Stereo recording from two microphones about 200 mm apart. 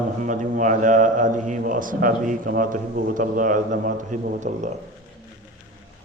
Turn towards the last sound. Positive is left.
turn(degrees=-40)  # may be behind; listen again after turning